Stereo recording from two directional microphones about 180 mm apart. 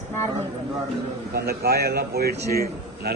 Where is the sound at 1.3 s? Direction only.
60° right (ahead or behind).